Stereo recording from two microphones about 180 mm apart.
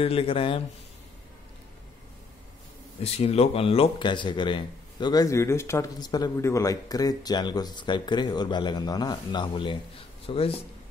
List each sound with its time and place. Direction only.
0.0 s speech: 30° left (ahead or behind)
3.0 s speech: 35° left (ahead or behind)